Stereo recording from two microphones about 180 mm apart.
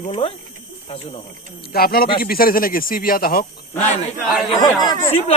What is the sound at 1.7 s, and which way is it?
Speech, 60° left (ahead or behind).